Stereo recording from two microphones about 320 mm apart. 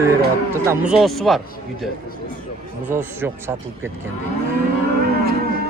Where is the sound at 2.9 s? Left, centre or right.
Centre.